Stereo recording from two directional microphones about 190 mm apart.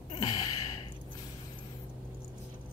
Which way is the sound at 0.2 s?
20° left (ahead or behind).